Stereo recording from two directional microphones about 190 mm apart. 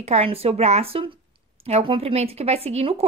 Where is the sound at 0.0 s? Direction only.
35° right (ahead or behind).